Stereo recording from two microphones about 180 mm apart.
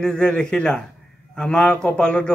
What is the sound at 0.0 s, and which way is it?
Speech, 5° left (ahead or behind).